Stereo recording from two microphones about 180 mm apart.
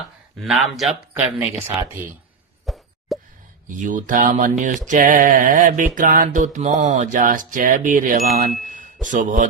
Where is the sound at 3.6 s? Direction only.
45° right (ahead or behind).